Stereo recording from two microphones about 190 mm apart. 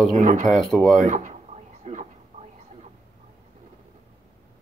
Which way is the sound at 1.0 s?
40° right (ahead or behind).